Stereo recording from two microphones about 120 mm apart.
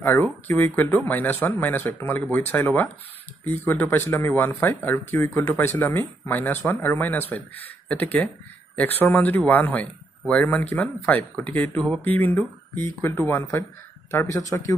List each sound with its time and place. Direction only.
0.0 s speech: 15° left (ahead or behind)
14.1 s speech: 30° left (ahead or behind)